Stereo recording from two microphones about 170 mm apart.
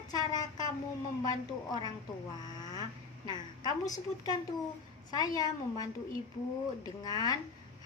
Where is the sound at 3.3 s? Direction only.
25° left (ahead or behind).